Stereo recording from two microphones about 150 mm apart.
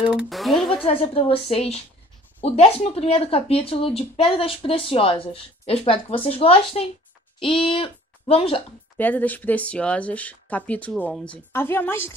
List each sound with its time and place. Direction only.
0.1 s speech: 5° right (ahead or behind)
0.8 s a child's voice: 40° left (ahead or behind)
8.9 s speech: 10° left (ahead or behind)